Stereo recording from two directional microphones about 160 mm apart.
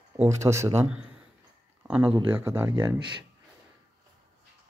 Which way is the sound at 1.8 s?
5° right (ahead or behind).